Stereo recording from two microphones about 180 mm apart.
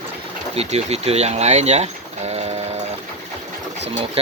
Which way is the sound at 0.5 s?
35° right (ahead or behind).